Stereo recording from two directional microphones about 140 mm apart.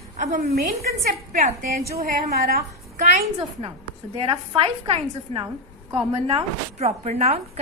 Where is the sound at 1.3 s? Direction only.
55° right (ahead or behind).